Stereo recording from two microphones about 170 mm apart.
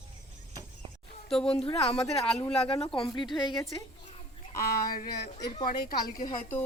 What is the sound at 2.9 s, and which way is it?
Speech, 25° left (ahead or behind).